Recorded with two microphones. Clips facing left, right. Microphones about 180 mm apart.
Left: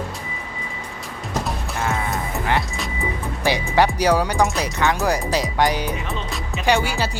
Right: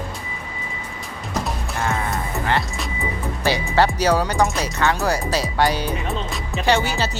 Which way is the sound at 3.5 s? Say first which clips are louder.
Even; 15° left (ahead or behind).